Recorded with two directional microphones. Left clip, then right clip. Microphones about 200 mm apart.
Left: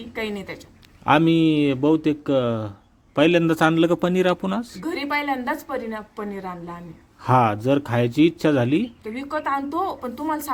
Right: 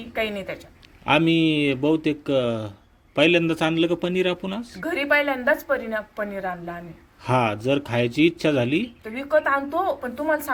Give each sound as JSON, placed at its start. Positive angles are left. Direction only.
{"t": 0.2, "sound": "a man's voice", "side_deg": 10}
{"t": 4.8, "sound": "speech", "side_deg": 10}